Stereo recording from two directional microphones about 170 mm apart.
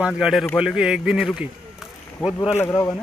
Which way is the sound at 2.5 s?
15° left (ahead or behind).